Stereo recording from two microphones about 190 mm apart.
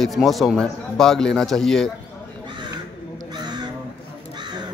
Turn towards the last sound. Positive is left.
turn(degrees=-20)  # may be behind; listen again after turning